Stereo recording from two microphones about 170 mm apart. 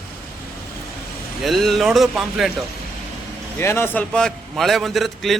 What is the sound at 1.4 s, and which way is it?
A man's voice, centre (ahead or behind).